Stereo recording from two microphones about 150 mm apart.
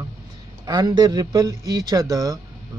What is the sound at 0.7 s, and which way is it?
Speech, 25° right (ahead or behind).